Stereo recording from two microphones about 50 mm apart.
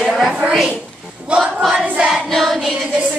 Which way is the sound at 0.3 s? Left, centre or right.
Centre.